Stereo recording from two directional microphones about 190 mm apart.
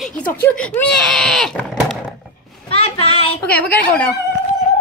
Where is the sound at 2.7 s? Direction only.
30° left (ahead or behind).